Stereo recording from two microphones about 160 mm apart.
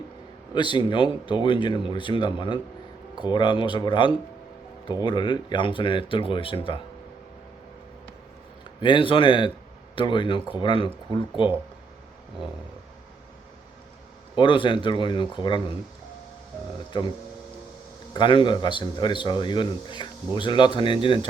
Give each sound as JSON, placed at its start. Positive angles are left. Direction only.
{"t": 0.5, "sound": "a man's voice", "side_deg": 30}
{"t": 8.8, "sound": "a man's voice", "side_deg": 30}
{"t": 14.3, "sound": "a man's voice", "side_deg": 30}
{"t": 18.1, "sound": "a man's voice", "side_deg": 30}